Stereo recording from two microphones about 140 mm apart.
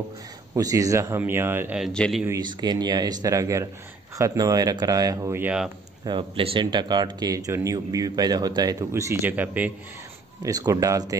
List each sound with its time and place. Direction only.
0.6 s speech: 25° right (ahead or behind)
1.8 s a man's voice: centre (ahead or behind)
2.4 s speech: 30° right (ahead or behind)
5.4 s speech: 5° right (ahead or behind)
6.0 s speech: 40° right (ahead or behind); by 9.7 s 10° right (ahead or behind)
10.4 s speech: 25° right (ahead or behind)